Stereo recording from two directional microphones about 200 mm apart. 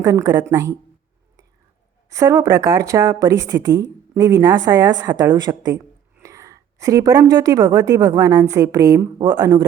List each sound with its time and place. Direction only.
0.0 s a woman's voice: 15° right (ahead or behind)
2.0 s a woman's voice: 15° right (ahead or behind)